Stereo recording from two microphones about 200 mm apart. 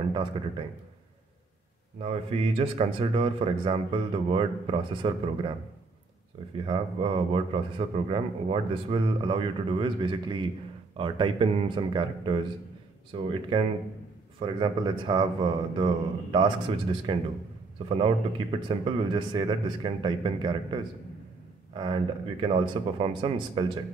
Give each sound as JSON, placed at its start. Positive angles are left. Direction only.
{"t": 0.1, "sound": "a man's voice", "side_deg": -25}
{"t": 2.0, "sound": "a man's voice", "side_deg": -30}
{"t": 6.6, "sound": "a man's voice", "side_deg": -25}